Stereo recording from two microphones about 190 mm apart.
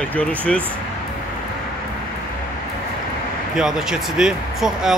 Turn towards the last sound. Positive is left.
turn(degrees=-5)  # may be behind; listen again after turning